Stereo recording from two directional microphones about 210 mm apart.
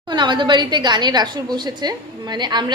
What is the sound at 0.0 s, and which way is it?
A woman's voice, 20° right (ahead or behind).